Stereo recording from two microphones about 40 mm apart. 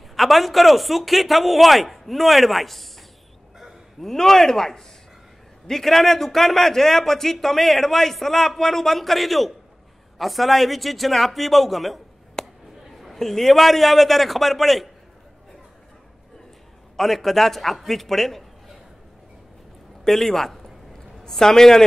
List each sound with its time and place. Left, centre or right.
0.1 s a man's voice: centre
12.4 s a sound: centre
12.9 s chatter: centre
13.2 s a man's voice: centre
16.9 s a man's voice: centre
20.1 s a sound: centre